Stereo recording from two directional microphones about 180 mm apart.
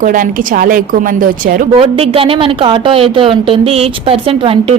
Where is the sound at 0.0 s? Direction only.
50° right (ahead or behind).